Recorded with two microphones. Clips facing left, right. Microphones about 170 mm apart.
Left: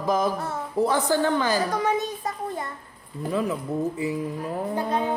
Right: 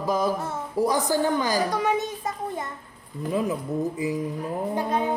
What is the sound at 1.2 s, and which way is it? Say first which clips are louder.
A woman's voice: even; 15° right (ahead or behind).